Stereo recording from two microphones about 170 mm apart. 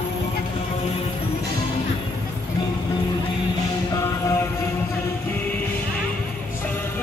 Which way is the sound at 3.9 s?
20° left (ahead or behind).